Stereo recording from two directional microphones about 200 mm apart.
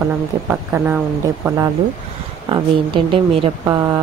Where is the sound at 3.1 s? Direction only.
25° right (ahead or behind).